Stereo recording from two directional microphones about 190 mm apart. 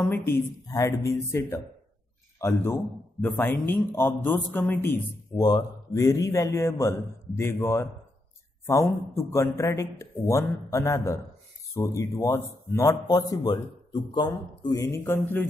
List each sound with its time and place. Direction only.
0.1 s a man's voice: 10° left (ahead or behind)